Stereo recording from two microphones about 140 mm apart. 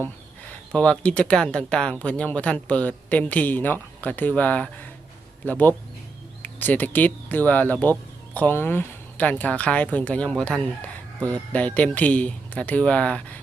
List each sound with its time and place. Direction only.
0.7 s speech: 5° left (ahead or behind)